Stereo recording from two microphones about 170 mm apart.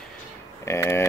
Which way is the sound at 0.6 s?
15° left (ahead or behind).